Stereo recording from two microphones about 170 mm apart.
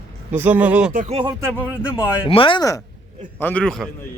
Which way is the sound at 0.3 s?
10° right (ahead or behind).